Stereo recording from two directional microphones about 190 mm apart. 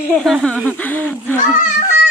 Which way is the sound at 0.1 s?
Centre (ahead or behind).